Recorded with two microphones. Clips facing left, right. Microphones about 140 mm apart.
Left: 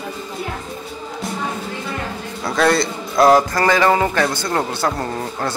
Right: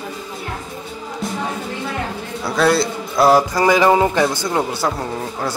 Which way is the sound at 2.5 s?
5° right (ahead or behind).